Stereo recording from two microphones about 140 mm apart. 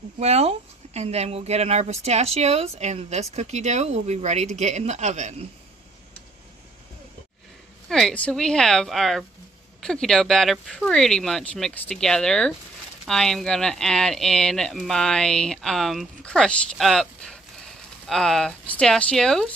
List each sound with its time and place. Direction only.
0.2 s speech: 50° right (ahead or behind)
7.9 s speech: 5° left (ahead or behind)